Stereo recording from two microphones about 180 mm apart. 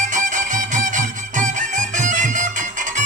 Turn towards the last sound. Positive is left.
turn(degrees=-45)  # may be behind; listen again after turning